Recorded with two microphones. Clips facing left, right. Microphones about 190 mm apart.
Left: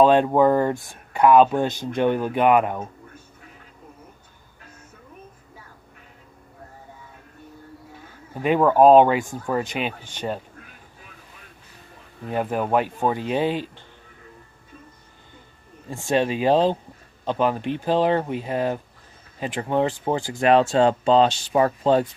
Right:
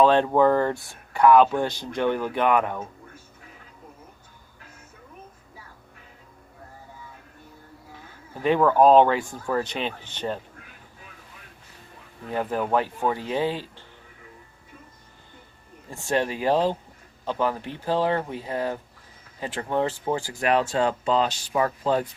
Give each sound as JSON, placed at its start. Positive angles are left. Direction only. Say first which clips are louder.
{"t": 0.0, "sound": "speech", "louder": "left 2 dB", "side_deg": 15}
{"t": 8.4, "sound": "speech", "louder": "left 2 dB", "side_deg": 15}
{"t": 12.3, "sound": "speech", "louder": "left 2 dB", "side_deg": 15}
{"t": 16.0, "sound": "speech", "louder": "left 4 dB", "side_deg": 20}